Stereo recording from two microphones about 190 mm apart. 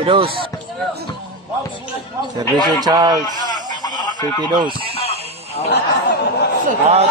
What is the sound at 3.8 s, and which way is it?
Chicken, 20° left (ahead or behind).